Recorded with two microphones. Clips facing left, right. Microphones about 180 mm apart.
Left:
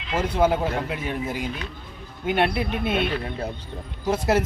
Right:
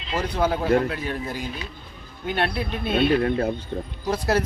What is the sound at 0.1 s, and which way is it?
Speech, 20° left (ahead or behind).